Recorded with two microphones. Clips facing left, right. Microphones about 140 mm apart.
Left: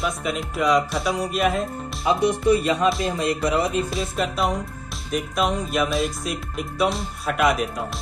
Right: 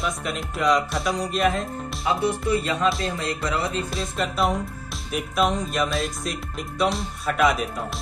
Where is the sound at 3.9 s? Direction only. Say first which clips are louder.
Left 2 dB; centre (ahead or behind).